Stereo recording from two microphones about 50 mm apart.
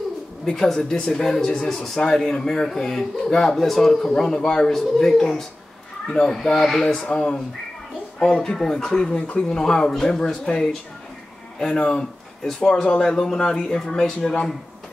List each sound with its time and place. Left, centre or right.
0.5 s speech: centre
1.2 s speech: centre
6.9 s speech: centre
11.6 s speech: centre